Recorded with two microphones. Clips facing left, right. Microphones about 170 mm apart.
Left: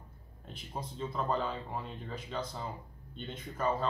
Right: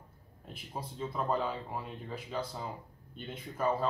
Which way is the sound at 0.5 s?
5° right (ahead or behind).